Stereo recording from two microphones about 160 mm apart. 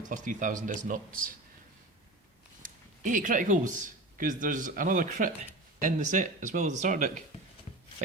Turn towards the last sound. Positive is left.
turn(degrees=-50)  # may be behind; listen again after turning